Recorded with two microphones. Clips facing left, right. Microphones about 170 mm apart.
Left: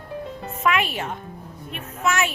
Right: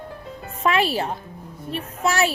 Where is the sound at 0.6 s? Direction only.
35° right (ahead or behind).